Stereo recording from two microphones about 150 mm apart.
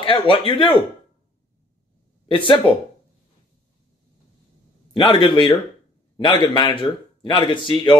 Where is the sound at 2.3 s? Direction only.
35° left (ahead or behind).